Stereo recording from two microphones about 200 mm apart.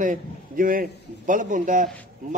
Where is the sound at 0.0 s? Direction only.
45° right (ahead or behind).